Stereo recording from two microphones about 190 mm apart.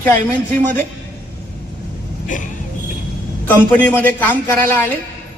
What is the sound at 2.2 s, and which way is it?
Speech, 45° left (ahead or behind).